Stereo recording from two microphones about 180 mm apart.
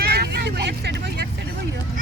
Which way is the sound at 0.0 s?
60° right (ahead or behind).